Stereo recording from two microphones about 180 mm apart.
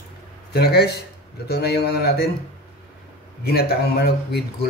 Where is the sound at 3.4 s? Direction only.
60° left (ahead or behind).